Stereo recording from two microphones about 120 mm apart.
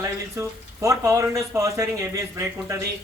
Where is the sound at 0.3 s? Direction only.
25° right (ahead or behind).